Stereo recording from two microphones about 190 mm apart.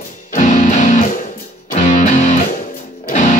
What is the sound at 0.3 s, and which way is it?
Music, 40° left (ahead or behind).